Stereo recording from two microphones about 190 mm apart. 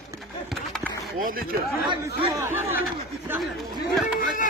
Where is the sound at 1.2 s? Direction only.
50° right (ahead or behind).